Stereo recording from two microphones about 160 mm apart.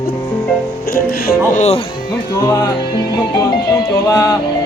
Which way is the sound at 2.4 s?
20° left (ahead or behind).